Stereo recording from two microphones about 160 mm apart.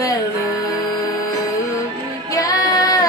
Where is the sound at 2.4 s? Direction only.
20° left (ahead or behind).